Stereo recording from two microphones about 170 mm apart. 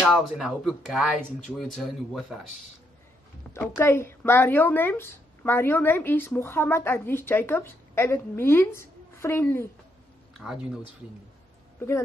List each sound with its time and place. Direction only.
0.0 s speech: centre (ahead or behind)
3.5 s speech: 15° left (ahead or behind)
10.4 s speech: 5° right (ahead or behind)